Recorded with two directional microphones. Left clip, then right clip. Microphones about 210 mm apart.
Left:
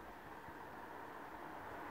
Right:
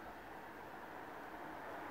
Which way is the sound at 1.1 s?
50° right (ahead or behind).